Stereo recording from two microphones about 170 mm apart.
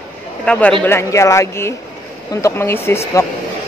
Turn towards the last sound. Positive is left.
turn(degrees=15)  # may be behind; listen again after turning